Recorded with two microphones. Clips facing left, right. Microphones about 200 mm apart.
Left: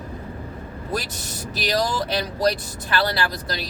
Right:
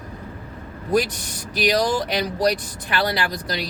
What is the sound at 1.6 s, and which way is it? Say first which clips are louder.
Speech: right 3 dB; 15° right (ahead or behind).